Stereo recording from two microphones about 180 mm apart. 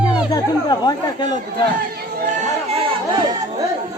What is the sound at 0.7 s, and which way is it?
Chatter, 25° left (ahead or behind).